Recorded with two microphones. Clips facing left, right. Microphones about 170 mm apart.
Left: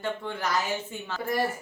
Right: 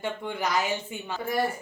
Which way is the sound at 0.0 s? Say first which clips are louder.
Right 1 dB; 15° right (ahead or behind).